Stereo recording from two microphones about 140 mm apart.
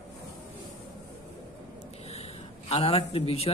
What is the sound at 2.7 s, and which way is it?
Speech, 45° left (ahead or behind).